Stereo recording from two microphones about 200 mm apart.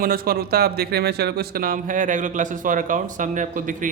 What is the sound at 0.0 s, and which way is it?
Speech, 50° right (ahead or behind).